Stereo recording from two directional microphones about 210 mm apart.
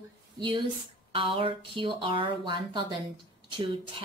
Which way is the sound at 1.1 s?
25° right (ahead or behind).